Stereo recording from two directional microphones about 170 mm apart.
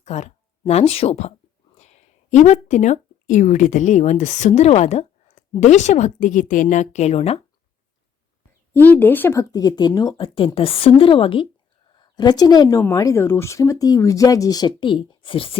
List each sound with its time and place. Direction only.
0.0 s speech: 40° left (ahead or behind)
8.7 s a woman's voice: 10° left (ahead or behind); by 15.5 s 30° left (ahead or behind)